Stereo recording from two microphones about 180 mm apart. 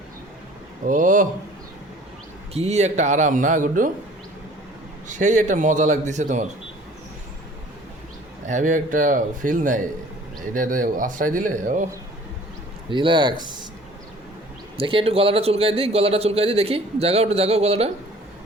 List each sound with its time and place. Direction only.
0.9 s a man's voice: 45° right (ahead or behind)
2.5 s speech: 35° right (ahead or behind)
5.0 s a man's voice: 45° right (ahead or behind)
8.4 s a man's voice: 45° right (ahead or behind)
12.9 s speech: 25° right (ahead or behind)
14.8 s speech: 30° right (ahead or behind)